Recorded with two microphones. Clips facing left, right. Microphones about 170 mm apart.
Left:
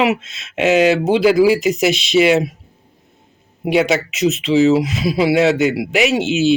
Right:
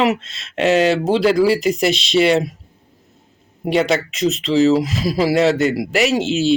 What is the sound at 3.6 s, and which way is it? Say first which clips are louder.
Speech: left 1 dB; 5° left (ahead or behind).